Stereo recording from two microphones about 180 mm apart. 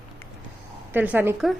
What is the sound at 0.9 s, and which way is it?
Speech, 10° right (ahead or behind).